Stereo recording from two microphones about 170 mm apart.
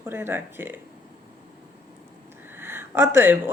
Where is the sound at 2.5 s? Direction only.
15° right (ahead or behind).